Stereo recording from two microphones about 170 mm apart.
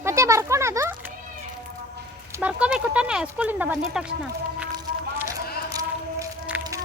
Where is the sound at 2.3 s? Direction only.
10° right (ahead or behind).